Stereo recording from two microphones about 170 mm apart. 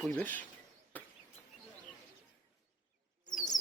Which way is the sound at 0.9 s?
10° left (ahead or behind).